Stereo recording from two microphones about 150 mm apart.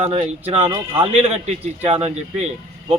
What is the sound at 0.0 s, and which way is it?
A man's voice, 45° right (ahead or behind).